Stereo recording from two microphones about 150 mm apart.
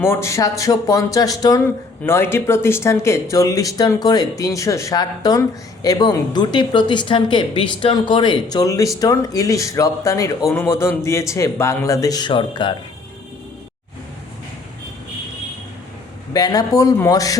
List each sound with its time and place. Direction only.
0.0 s speech: 15° left (ahead or behind); by 12.7 s 35° left (ahead or behind)
16.3 s speech: 25° left (ahead or behind)